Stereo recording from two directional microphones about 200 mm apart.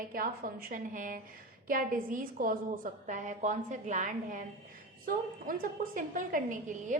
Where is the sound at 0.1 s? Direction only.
45° right (ahead or behind).